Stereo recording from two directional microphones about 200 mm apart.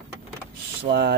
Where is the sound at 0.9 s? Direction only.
35° right (ahead or behind).